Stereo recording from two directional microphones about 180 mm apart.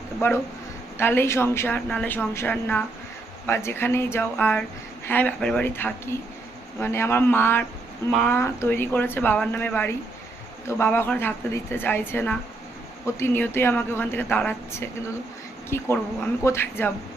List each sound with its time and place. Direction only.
0.9 s a woman's voice: 10° left (ahead or behind)